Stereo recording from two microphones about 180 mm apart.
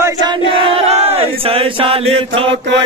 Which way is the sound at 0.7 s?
35° right (ahead or behind).